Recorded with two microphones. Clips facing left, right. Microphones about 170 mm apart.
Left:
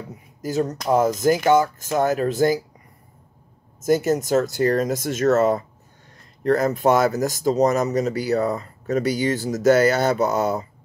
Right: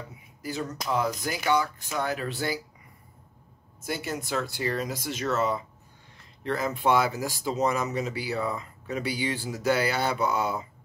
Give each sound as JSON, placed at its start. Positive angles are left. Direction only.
{"t": 0.1, "sound": "a sound", "side_deg": 40}
{"t": 0.8, "sound": "speech", "side_deg": 45}
{"t": 3.8, "sound": "speech", "side_deg": 45}